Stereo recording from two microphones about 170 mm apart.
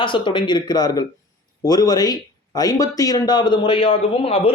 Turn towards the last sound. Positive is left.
turn(degrees=35)  # may be behind; listen again after turning